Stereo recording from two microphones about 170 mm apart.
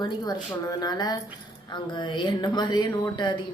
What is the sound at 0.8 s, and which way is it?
Speech, 25° left (ahead or behind).